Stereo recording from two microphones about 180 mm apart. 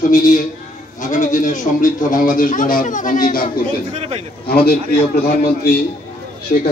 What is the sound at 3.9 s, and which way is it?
Speech, 35° right (ahead or behind).